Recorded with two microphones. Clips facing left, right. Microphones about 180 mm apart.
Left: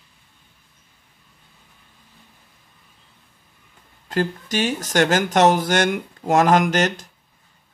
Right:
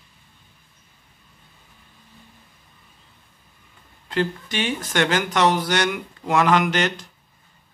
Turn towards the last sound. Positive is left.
turn(degrees=45)  # may be behind; listen again after turning